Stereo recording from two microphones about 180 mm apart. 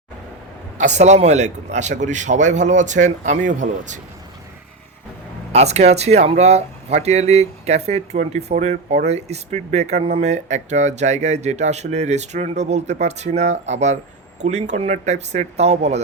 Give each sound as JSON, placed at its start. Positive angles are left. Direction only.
{"t": 0.8, "sound": "a man's voice", "side_deg": -40}
{"t": 5.5, "sound": "speech", "side_deg": -35}